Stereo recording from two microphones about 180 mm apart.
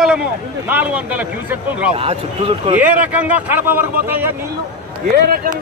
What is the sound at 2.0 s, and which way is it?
Speech, 30° right (ahead or behind).